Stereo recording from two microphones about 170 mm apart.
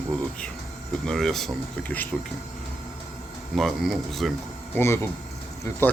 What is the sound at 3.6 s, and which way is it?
Speech, centre (ahead or behind).